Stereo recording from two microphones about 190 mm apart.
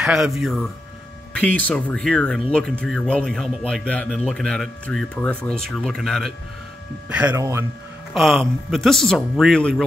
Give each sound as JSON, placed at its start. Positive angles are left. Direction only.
{"t": 0.0, "sound": "a man's voice", "side_deg": -5}
{"t": 8.1, "sound": "a man's voice", "side_deg": 0}